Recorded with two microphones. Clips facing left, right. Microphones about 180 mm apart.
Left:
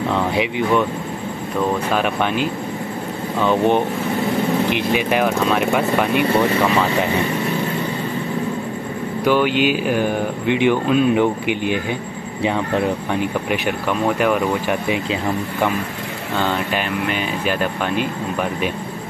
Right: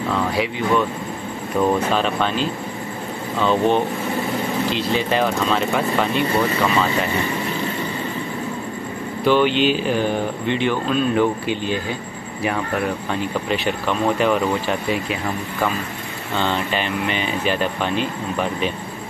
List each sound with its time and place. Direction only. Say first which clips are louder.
0.3 s speech: left 2 dB; 20° left (ahead or behind)
2.0 s speech: left 1 dB; 15° left (ahead or behind)
9.2 s speech: even; 10° left (ahead or behind)
16.4 s speech: even; 5° left (ahead or behind)